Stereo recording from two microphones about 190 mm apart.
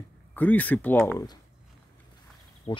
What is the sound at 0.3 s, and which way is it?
Speech, 10° left (ahead or behind).